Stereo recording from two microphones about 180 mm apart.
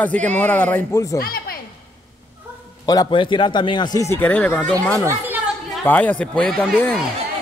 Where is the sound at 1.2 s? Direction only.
55° left (ahead or behind).